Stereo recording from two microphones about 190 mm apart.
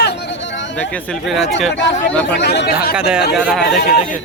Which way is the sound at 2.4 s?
65° left (ahead or behind).